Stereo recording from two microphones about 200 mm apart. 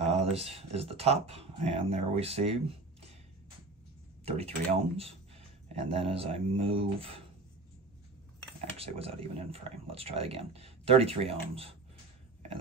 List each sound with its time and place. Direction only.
0.0 s speech: 30° right (ahead or behind)
4.2 s speech: 30° right (ahead or behind)
8.7 s speech: 30° right (ahead or behind)